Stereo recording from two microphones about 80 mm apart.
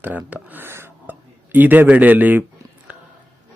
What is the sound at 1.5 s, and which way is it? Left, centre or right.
Speech, right.